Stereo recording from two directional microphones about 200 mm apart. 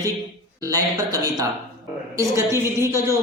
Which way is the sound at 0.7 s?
20° right (ahead or behind).